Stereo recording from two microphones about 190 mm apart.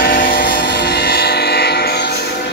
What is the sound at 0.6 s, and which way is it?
Train, 60° left (ahead or behind).